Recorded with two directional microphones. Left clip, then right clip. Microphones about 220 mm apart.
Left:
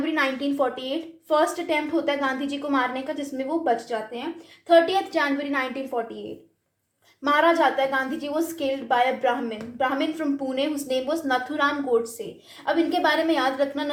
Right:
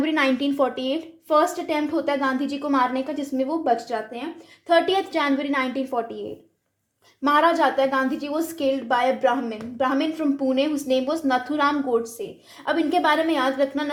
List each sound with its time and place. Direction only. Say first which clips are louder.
0.0 s a sound: right 2 dB; 30° right (ahead or behind)
0.4 s a woman's voice: right 2 dB; 35° right (ahead or behind)
7.2 s a woman's voice: right 1 dB; 30° right (ahead or behind)